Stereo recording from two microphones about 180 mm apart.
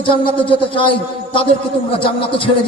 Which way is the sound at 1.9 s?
30° left (ahead or behind).